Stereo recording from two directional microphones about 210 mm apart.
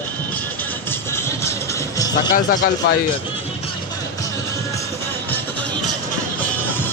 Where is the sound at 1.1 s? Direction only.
10° left (ahead or behind).